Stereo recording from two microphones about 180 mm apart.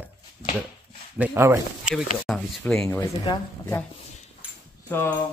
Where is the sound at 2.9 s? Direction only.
20° left (ahead or behind).